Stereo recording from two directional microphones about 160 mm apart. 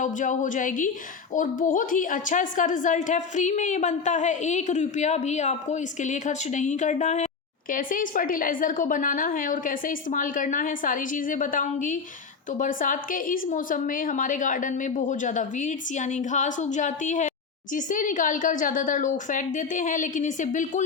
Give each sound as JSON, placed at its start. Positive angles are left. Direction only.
{"t": 0.0, "sound": "a woman's voice", "side_deg": 55}